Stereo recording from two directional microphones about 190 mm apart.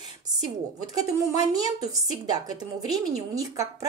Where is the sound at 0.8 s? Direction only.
20° right (ahead or behind).